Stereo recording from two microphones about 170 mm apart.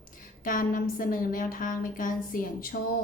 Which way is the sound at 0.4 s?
55° left (ahead or behind).